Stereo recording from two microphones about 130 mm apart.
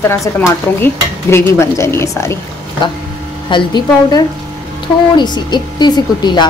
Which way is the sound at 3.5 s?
35° left (ahead or behind).